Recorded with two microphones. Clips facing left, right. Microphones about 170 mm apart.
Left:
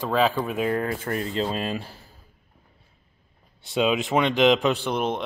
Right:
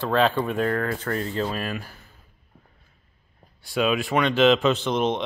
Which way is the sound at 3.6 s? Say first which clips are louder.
Even; 20° left (ahead or behind).